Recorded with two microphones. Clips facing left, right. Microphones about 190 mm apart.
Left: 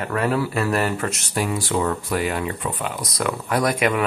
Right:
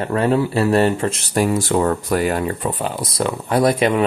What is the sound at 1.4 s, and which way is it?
Speech, 45° right (ahead or behind).